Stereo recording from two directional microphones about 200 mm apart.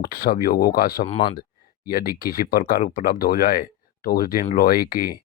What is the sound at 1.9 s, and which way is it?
Speech, 45° left (ahead or behind).